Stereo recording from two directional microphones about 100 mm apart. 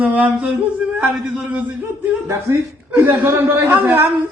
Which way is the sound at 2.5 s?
25° right (ahead or behind).